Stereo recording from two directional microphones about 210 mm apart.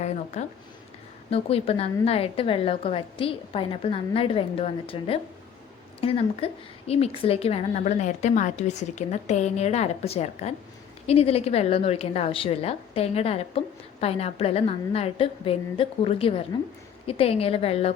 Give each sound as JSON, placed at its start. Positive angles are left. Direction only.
{"t": 0.4, "sound": "a woman's voice", "side_deg": 35}